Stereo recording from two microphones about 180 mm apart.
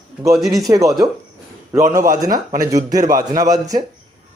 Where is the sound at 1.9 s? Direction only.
15° right (ahead or behind).